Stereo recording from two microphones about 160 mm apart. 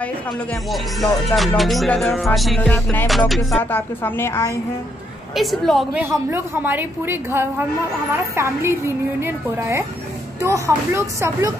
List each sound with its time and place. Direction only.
0.0 s speech: 5° left (ahead or behind)
3.1 s speech: centre (ahead or behind)
3.7 s a woman's voice: 15° left (ahead or behind)
5.3 s speech: centre (ahead or behind)
6.0 s a woman's voice: 15° right (ahead or behind)